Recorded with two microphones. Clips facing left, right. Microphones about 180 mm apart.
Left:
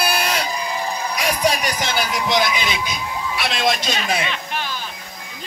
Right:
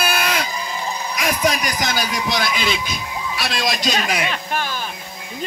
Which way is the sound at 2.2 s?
20° left (ahead or behind).